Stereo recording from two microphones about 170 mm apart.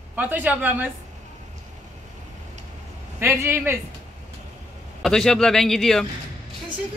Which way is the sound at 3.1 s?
15° right (ahead or behind).